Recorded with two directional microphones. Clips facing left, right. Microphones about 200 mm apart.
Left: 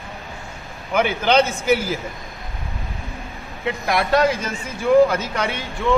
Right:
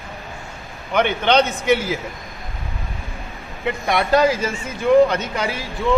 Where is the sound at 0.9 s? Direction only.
5° left (ahead or behind).